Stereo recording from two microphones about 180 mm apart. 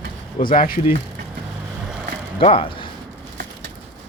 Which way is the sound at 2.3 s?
30° left (ahead or behind).